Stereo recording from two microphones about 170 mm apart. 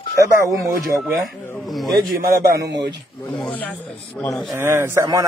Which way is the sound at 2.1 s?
70° right (ahead or behind).